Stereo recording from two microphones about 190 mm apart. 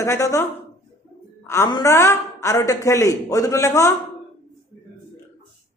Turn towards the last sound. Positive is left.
turn(degrees=15)  # may be behind; listen again after turning